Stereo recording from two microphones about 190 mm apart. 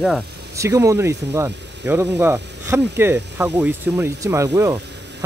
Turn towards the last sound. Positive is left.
turn(degrees=-15)  # may be behind; listen again after turning